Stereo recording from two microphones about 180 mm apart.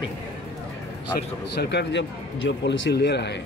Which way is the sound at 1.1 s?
65° left (ahead or behind).